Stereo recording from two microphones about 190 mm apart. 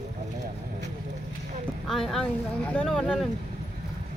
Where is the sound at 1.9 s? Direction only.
Centre (ahead or behind).